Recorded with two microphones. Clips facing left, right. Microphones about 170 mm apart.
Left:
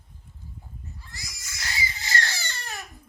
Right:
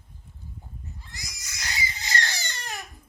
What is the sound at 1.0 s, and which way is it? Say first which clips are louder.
Crying: even; 20° right (ahead or behind).